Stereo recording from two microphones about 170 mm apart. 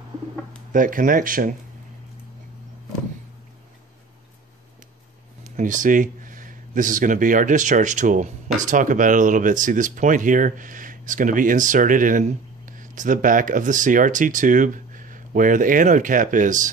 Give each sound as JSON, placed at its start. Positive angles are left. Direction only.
{"t": 0.7, "sound": "speech", "side_deg": -55}
{"t": 5.4, "sound": "speech", "side_deg": -50}